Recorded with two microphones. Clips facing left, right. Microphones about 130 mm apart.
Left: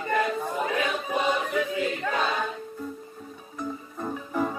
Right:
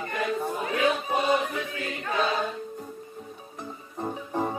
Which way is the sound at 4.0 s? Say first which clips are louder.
Even; 30° right (ahead or behind).